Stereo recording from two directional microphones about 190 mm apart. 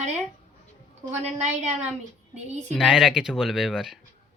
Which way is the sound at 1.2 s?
35° right (ahead or behind).